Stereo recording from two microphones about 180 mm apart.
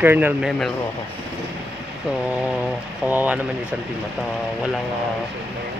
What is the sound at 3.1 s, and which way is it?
Speech, 10° right (ahead or behind).